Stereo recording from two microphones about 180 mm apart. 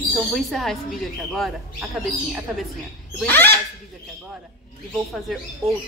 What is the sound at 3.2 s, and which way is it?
Speech, 10° left (ahead or behind).